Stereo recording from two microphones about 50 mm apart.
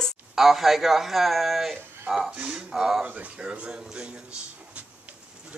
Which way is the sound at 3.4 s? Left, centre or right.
Centre.